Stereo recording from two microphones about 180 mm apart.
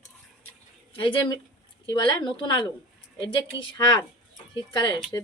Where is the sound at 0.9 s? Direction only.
30° left (ahead or behind).